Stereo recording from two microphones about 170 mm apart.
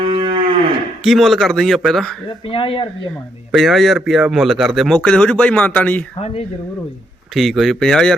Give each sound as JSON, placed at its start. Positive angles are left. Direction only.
{"t": 0.0, "sound": "cattle", "side_deg": -30}
{"t": 1.0, "sound": "a man's voice", "side_deg": 0}
{"t": 2.5, "sound": "speech", "side_deg": 30}
{"t": 3.5, "sound": "a man's voice", "side_deg": 0}
{"t": 7.3, "sound": "a man's voice", "side_deg": 0}